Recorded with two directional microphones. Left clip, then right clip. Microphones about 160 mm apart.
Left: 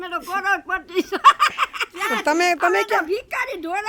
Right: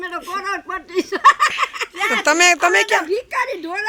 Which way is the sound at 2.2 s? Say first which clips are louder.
Right 5 dB; 15° left (ahead or behind).